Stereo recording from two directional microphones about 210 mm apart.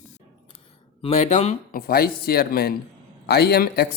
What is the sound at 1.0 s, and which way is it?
A man's voice, 30° left (ahead or behind).